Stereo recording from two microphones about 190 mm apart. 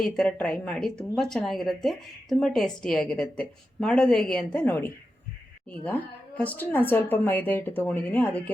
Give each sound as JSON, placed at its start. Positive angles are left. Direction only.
{"t": 0.0, "sound": "a woman's voice", "side_deg": 5}